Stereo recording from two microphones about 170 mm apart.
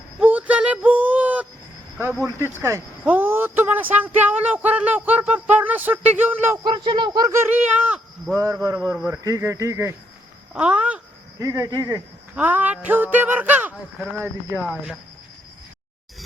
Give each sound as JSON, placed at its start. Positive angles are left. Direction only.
{"t": 0.2, "sound": "a sound", "side_deg": -10}
{"t": 2.6, "sound": "speech", "side_deg": -15}
{"t": 8.4, "sound": "speech", "side_deg": -20}
{"t": 11.3, "sound": "speech", "side_deg": -20}
{"t": 12.4, "sound": "speech", "side_deg": -10}